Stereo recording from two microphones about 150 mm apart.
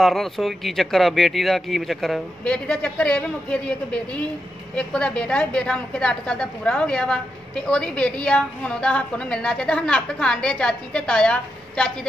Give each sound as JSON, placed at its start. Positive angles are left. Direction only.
{"t": 0.0, "sound": "a woman's voice", "side_deg": 0}